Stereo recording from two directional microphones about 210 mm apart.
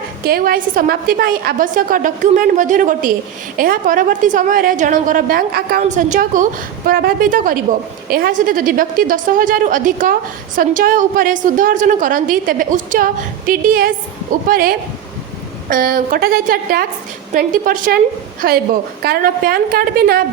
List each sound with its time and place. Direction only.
0.3 s a woman's voice: 45° right (ahead or behind)
5.8 s a woman's voice: 35° right (ahead or behind)